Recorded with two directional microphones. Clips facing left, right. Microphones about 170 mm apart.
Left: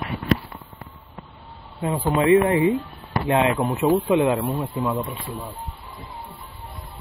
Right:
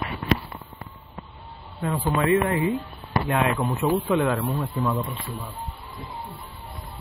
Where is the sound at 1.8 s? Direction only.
20° left (ahead or behind).